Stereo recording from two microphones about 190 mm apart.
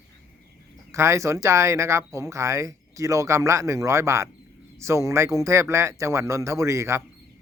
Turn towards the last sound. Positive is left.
turn(degrees=-15)  # may be behind; listen again after turning